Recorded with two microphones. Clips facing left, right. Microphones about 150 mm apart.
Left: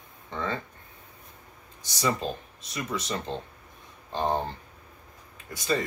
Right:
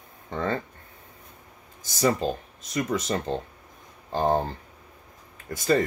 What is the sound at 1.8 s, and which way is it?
Speech, 45° right (ahead or behind).